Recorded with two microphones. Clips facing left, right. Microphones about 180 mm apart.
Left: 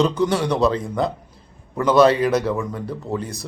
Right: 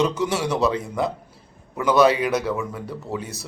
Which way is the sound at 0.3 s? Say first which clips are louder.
Left 3 dB; 5° right (ahead or behind).